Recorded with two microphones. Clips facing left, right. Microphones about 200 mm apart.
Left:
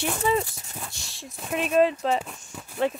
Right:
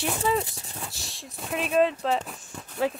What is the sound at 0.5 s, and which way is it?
Speech, 30° right (ahead or behind).